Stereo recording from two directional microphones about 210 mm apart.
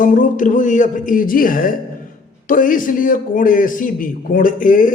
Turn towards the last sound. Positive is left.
turn(degrees=40)  # may be behind; listen again after turning